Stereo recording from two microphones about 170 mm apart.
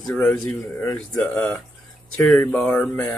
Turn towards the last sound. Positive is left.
turn(degrees=10)  # may be behind; listen again after turning